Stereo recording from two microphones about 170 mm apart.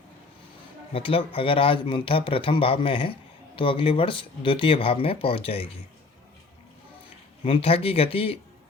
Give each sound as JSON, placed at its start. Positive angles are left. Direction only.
{"t": 0.9, "sound": "speech", "side_deg": 30}
{"t": 7.4, "sound": "speech", "side_deg": 35}